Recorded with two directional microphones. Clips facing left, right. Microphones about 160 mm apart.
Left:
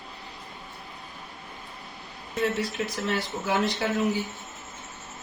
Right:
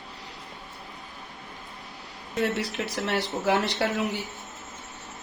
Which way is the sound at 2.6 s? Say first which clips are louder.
Left 1 dB; 75° right (ahead or behind).